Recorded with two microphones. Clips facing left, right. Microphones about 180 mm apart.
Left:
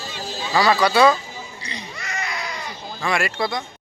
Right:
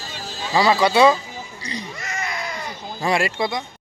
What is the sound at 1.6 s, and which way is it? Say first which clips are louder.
Baby cry: right 6 dB; 45° right (ahead or behind).